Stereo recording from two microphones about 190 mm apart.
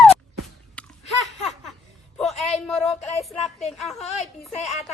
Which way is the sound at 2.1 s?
Centre (ahead or behind).